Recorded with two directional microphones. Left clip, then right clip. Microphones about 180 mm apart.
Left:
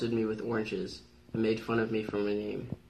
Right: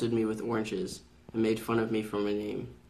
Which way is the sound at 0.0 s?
20° right (ahead or behind).